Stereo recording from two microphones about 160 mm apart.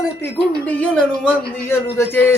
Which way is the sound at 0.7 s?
5° left (ahead or behind).